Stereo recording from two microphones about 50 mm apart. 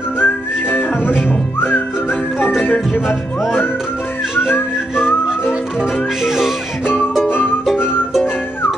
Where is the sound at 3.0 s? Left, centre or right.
Centre.